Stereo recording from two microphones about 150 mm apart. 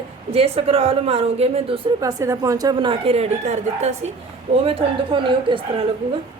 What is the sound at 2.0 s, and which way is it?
A woman's voice, 25° right (ahead or behind).